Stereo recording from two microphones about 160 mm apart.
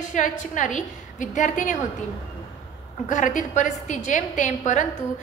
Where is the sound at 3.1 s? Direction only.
50° left (ahead or behind).